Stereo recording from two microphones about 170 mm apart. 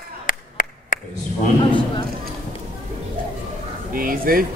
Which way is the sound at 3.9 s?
55° right (ahead or behind).